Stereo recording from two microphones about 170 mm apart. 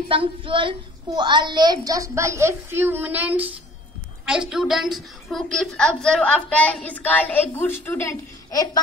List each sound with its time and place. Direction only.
0.1 s a woman's voice: 30° right (ahead or behind); by 8.6 s 20° left (ahead or behind)